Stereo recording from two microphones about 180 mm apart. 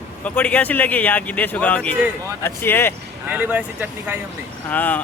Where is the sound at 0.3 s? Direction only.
10° left (ahead or behind).